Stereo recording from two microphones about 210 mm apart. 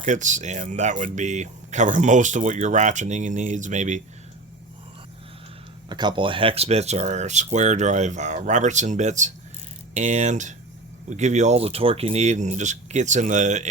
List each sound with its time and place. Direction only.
0.0 s speech: 35° right (ahead or behind)
5.9 s speech: 20° right (ahead or behind)